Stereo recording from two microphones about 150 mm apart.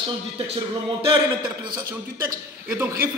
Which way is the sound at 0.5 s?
35° right (ahead or behind).